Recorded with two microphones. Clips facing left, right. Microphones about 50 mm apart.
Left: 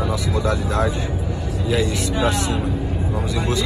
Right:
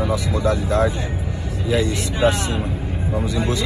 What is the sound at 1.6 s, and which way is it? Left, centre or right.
Speech, right.